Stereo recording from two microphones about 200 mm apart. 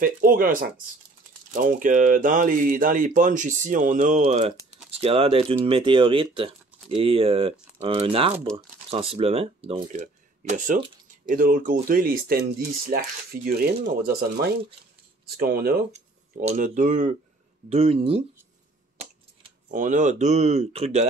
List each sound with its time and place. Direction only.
0.0 s speech: 45° right (ahead or behind)
15.2 s speech: 50° right (ahead or behind)
15.9 s speech: 35° right (ahead or behind)
19.7 s speech: 40° right (ahead or behind)